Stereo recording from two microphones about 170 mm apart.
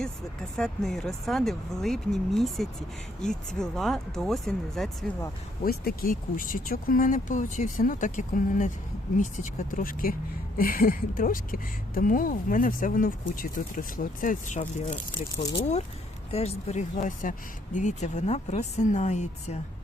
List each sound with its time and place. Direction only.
0.5 s speech: centre (ahead or behind)
5.6 s speech: 60° left (ahead or behind); by 16.8 s 35° left (ahead or behind)
17.0 s speech: 50° left (ahead or behind)